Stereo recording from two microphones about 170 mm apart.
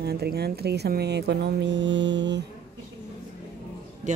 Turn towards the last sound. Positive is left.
turn(degrees=-45)  # may be behind; listen again after turning